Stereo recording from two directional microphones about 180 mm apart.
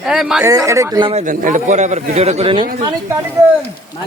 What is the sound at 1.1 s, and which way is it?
A man's voice, 45° right (ahead or behind).